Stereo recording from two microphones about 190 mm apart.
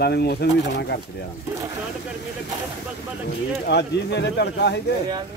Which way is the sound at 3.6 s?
65° left (ahead or behind).